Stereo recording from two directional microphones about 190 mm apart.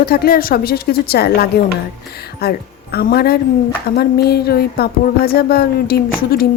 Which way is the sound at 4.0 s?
55° left (ahead or behind).